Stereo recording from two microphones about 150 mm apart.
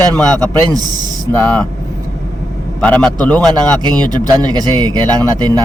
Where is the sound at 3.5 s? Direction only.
30° right (ahead or behind).